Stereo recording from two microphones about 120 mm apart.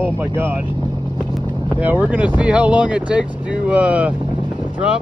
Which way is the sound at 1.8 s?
10° right (ahead or behind).